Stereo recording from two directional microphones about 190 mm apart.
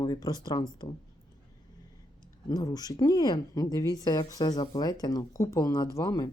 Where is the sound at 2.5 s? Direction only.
20° left (ahead or behind).